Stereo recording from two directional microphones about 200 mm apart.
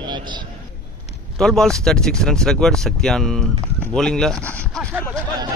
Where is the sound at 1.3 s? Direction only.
Centre (ahead or behind).